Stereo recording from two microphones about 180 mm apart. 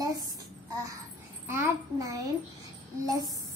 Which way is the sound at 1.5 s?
20° right (ahead or behind).